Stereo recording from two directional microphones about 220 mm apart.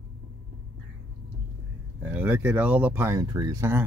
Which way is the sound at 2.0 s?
10° right (ahead or behind).